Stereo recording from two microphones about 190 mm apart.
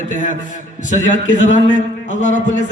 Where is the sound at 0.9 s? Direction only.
40° left (ahead or behind).